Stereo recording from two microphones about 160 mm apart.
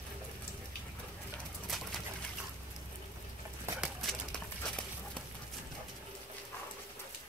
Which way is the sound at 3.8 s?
Centre (ahead or behind).